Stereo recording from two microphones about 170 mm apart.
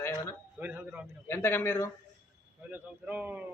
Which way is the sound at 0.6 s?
10° right (ahead or behind).